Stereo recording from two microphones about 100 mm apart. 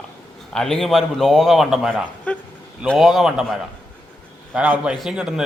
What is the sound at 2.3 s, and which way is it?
Speech, 15° left (ahead or behind).